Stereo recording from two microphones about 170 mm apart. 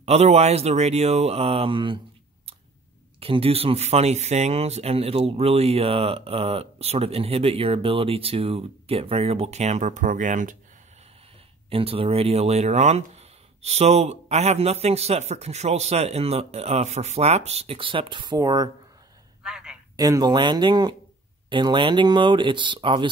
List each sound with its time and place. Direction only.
0.0 s speech: 40° right (ahead or behind)
3.2 s speech: 35° right (ahead or behind); by 10.6 s 50° right (ahead or behind)
11.7 s speech: 35° right (ahead or behind)
19.4 s a sound: 5° right (ahead or behind)
20.0 s speech: 20° right (ahead or behind)